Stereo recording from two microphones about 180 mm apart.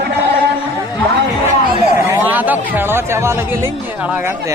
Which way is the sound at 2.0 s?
15° right (ahead or behind).